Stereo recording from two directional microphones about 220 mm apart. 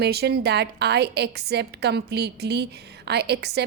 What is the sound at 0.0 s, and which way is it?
A woman's voice, 45° right (ahead or behind).